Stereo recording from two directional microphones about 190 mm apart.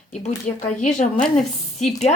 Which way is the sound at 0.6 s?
40° left (ahead or behind).